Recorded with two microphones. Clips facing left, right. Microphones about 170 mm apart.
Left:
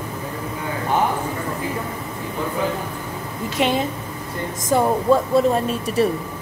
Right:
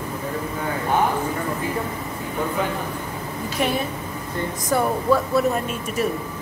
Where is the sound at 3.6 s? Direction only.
20° left (ahead or behind).